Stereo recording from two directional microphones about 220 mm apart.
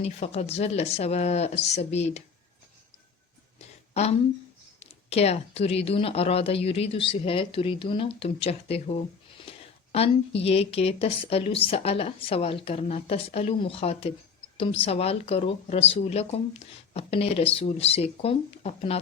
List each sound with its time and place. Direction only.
0.0 s speech: 30° left (ahead or behind)
4.8 s speech: 30° left (ahead or behind)